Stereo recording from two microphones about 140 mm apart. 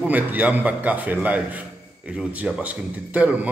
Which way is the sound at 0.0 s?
10° right (ahead or behind).